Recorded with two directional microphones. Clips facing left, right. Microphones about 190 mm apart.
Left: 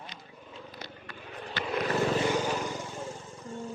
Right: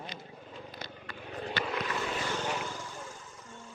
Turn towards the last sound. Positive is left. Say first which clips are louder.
# left 9 dB
turn(degrees=30)  # may be behind; listen again after turning